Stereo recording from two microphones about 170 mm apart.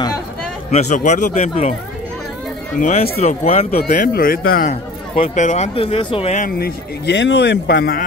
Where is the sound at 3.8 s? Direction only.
50° left (ahead or behind).